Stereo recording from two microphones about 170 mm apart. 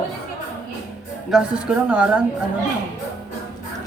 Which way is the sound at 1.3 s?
5° right (ahead or behind).